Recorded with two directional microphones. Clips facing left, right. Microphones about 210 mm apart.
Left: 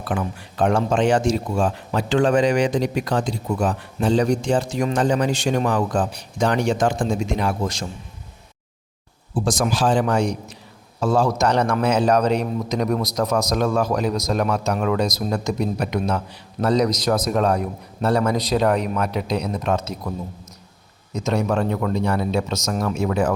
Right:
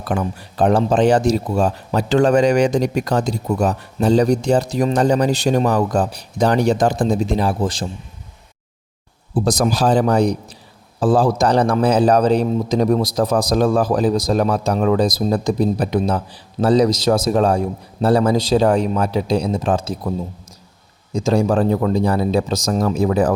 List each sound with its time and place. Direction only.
0.1 s a man's voice: 40° right (ahead or behind)
9.3 s a man's voice: 40° right (ahead or behind)